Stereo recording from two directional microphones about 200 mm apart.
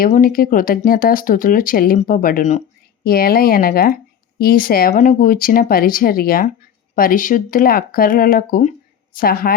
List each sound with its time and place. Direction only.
0.0 s speech: 45° left (ahead or behind)